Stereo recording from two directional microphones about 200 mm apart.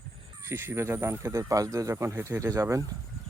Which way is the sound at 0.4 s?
10° right (ahead or behind).